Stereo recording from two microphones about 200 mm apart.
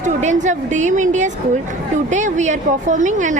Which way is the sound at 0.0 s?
35° right (ahead or behind).